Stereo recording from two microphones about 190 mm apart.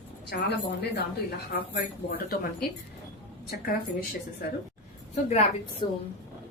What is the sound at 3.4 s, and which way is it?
Speech, 50° left (ahead or behind).